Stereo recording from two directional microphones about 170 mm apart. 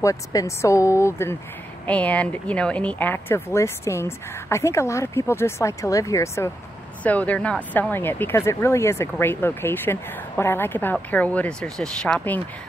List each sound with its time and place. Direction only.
0.0 s speech: 20° left (ahead or behind)